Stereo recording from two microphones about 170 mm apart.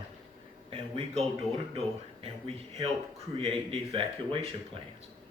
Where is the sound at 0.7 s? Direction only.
35° right (ahead or behind).